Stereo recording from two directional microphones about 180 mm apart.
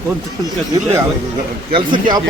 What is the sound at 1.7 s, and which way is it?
Speech, 25° right (ahead or behind).